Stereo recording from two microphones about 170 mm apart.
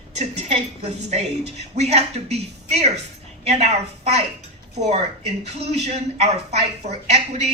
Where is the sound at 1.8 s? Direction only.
40° right (ahead or behind).